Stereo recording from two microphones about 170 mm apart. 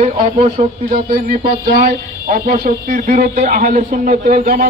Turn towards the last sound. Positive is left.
turn(degrees=-50)  # may be behind; listen again after turning